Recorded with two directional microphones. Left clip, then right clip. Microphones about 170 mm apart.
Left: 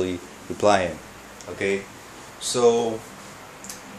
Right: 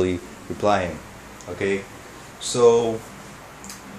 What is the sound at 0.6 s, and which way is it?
Speech, 40° left (ahead or behind).